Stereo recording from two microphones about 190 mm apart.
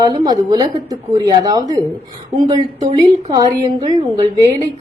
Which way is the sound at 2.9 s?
25° right (ahead or behind).